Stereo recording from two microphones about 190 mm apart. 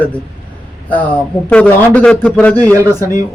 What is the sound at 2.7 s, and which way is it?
Speech, 15° right (ahead or behind).